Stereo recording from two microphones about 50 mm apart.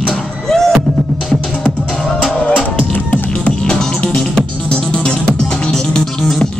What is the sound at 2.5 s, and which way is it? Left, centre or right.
Music, left.